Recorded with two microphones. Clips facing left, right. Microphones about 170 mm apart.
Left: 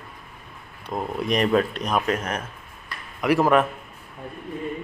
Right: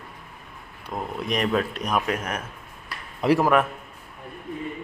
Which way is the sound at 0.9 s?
Centre (ahead or behind).